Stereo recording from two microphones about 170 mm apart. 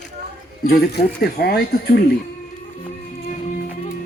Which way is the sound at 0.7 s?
65° left (ahead or behind).